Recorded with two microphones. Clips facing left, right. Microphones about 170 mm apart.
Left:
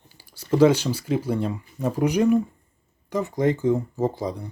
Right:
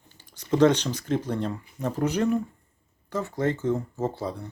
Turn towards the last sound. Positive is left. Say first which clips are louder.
# left 4 dB
turn(degrees=15)  # may be behind; listen again after turning